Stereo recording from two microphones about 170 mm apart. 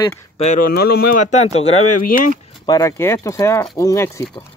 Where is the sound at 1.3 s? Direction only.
40° left (ahead or behind).